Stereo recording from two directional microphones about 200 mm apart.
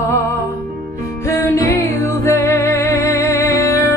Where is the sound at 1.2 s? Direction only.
15° left (ahead or behind).